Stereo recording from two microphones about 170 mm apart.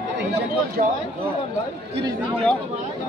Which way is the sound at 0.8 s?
50° right (ahead or behind).